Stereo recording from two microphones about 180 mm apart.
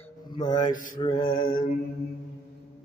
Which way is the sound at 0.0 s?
25° left (ahead or behind).